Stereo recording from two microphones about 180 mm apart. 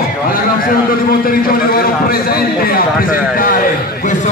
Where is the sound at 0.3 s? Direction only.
50° left (ahead or behind).